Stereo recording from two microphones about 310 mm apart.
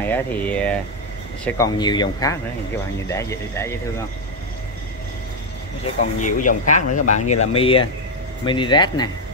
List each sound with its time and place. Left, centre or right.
0.0 s speech: centre
5.9 s speech: left